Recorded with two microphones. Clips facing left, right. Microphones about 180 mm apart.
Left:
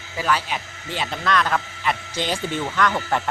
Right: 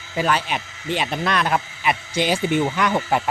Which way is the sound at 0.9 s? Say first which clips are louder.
Right 2 dB; 15° right (ahead or behind).